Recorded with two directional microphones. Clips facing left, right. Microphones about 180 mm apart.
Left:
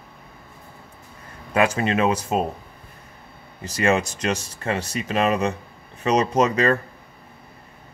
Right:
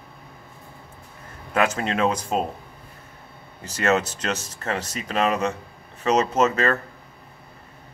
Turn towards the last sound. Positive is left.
turn(degrees=15)  # may be behind; listen again after turning